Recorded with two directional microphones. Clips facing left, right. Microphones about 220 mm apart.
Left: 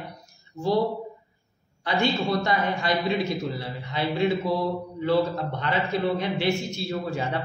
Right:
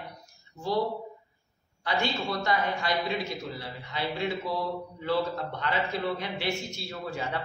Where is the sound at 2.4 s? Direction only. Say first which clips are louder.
Left 3 dB; 25° left (ahead or behind).